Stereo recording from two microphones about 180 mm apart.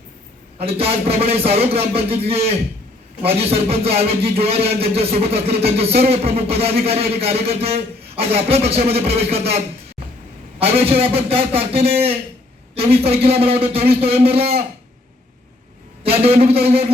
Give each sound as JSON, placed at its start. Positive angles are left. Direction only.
{"t": 0.6, "sound": "a man's voice", "side_deg": -35}
{"t": 16.0, "sound": "a man's voice", "side_deg": -35}